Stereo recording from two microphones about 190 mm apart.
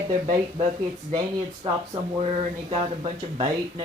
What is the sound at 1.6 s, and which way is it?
Speech, 30° right (ahead or behind).